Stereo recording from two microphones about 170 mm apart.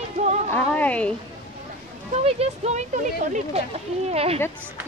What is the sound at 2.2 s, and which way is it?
Speech, 35° right (ahead or behind).